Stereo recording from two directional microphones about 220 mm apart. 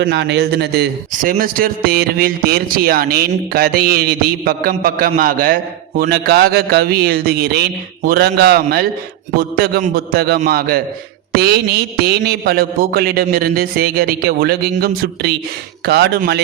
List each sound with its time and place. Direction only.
0.0 s a man's voice: 50° right (ahead or behind)